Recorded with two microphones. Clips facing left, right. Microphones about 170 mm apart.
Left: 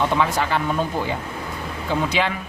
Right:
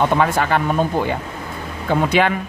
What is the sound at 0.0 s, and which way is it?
Speech, 55° right (ahead or behind).